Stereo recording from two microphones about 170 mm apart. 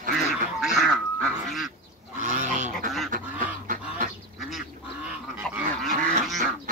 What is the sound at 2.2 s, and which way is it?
Goat, 45° right (ahead or behind).